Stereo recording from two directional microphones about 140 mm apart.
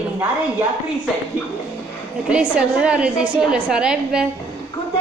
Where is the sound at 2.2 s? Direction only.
5° right (ahead or behind).